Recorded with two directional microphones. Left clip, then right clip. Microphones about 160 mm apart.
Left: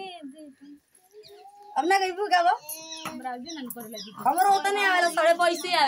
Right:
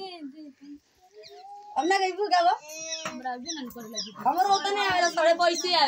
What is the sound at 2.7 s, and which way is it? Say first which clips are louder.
Speech: right 3 dB; 30° right (ahead or behind).